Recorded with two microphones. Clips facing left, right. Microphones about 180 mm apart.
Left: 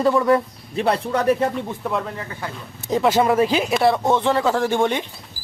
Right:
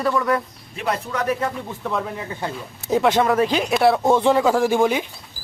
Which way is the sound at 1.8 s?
5° left (ahead or behind).